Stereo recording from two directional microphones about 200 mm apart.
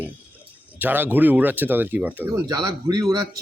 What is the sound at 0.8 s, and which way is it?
Speech, 10° right (ahead or behind).